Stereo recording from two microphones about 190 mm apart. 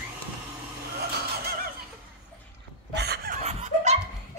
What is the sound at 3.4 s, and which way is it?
Laughter, 35° right (ahead or behind).